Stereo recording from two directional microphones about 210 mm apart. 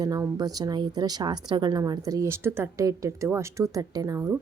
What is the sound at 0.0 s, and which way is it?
A woman's voice, 15° right (ahead or behind).